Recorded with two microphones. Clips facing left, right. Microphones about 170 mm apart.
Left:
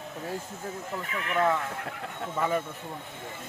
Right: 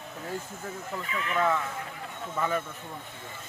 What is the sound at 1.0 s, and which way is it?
Speech, 60° left (ahead or behind).